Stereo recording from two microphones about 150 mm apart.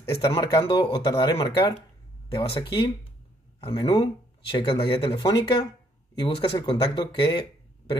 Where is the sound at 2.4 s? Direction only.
35° left (ahead or behind).